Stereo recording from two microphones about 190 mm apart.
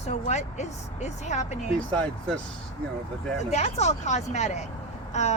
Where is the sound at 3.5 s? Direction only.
35° left (ahead or behind).